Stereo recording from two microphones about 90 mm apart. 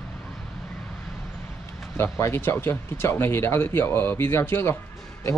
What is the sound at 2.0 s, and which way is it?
Speech, 30° left (ahead or behind).